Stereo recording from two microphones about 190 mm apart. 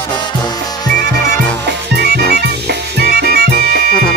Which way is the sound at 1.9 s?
55° right (ahead or behind).